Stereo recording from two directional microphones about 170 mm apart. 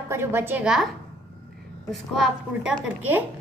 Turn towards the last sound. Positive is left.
turn(degrees=-10)  # may be behind; listen again after turning